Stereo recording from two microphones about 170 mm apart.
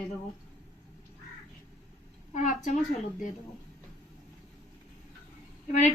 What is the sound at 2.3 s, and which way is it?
Speech, 45° left (ahead or behind).